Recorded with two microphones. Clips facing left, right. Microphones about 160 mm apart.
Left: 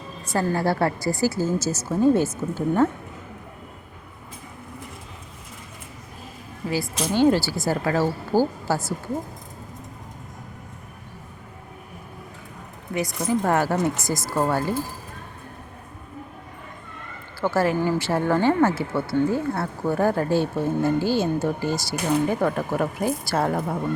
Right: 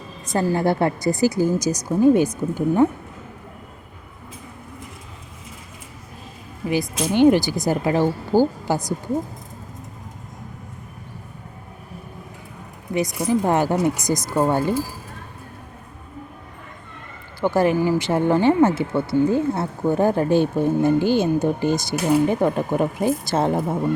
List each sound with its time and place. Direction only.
0.5 s speech: 20° right (ahead or behind)
6.8 s speech: centre (ahead or behind)
7.1 s speech: 20° right (ahead or behind)
12.9 s speech: 20° right (ahead or behind)
17.4 s speech: 20° right (ahead or behind)